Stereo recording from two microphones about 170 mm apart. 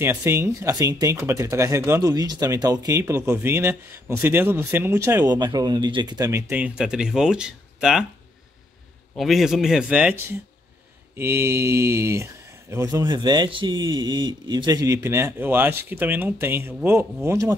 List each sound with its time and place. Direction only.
0.0 s speech: 15° right (ahead or behind)
9.1 s a man's voice: centre (ahead or behind); by 17.6 s 20° right (ahead or behind)